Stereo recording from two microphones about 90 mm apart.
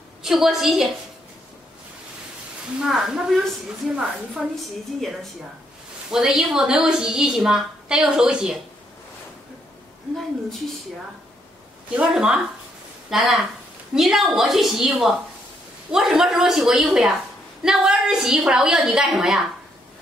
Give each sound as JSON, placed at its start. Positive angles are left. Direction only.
{"t": 0.2, "sound": "a woman's voice", "side_deg": -5}
{"t": 2.9, "sound": "a woman's voice", "side_deg": -5}
{"t": 6.1, "sound": "a woman's voice", "side_deg": -5}
{"t": 11.9, "sound": "a woman's voice", "side_deg": -10}